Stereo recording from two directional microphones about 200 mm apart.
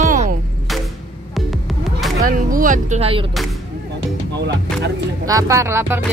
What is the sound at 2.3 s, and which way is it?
Speech, 45° right (ahead or behind).